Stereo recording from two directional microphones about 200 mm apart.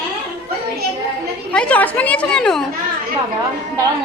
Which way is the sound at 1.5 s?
5° left (ahead or behind).